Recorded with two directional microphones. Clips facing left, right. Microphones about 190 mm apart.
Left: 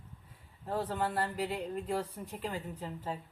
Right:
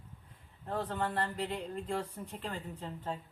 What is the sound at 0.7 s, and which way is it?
Speech, 5° left (ahead or behind).